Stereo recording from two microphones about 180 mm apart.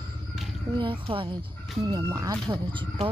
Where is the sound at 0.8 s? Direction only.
30° right (ahead or behind).